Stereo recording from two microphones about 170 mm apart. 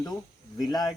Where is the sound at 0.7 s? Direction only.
25° left (ahead or behind).